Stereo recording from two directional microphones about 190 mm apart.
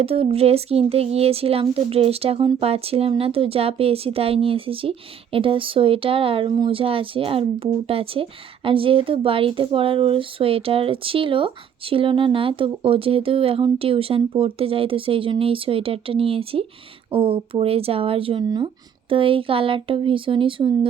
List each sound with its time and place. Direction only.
0.0 s speech: 30° right (ahead or behind)